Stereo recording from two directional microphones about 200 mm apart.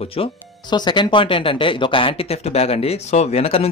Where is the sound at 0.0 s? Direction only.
30° left (ahead or behind).